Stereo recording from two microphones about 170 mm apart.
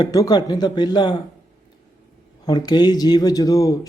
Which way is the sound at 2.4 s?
25° left (ahead or behind).